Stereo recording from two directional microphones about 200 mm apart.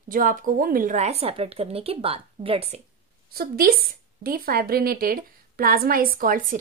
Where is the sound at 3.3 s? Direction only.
50° right (ahead or behind).